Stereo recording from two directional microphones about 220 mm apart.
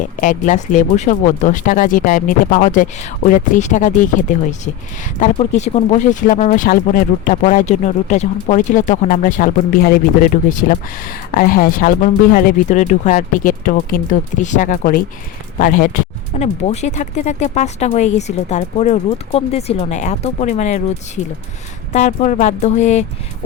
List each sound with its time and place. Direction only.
0.0 s speech: 35° left (ahead or behind)
21.9 s speech: 35° left (ahead or behind)